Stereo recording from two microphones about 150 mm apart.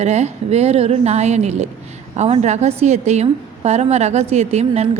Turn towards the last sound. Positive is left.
turn(degrees=-45)  # may be behind; listen again after turning